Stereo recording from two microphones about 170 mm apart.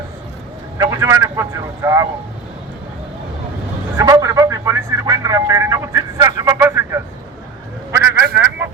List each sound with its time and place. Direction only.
0.8 s a man's voice: 20° right (ahead or behind)
3.9 s a man's voice: 20° right (ahead or behind)